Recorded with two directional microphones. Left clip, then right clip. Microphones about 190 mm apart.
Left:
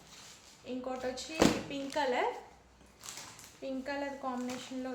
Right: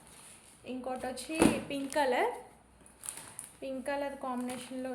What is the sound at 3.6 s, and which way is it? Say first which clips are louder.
Speech: right 2 dB; 45° right (ahead or behind).